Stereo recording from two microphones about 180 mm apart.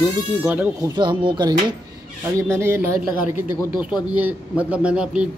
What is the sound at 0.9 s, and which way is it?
Speech, 25° right (ahead or behind).